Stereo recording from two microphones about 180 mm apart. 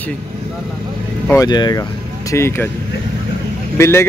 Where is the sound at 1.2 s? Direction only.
15° left (ahead or behind).